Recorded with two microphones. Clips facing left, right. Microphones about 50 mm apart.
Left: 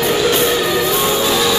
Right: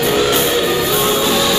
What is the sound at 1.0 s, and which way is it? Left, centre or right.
Music, centre.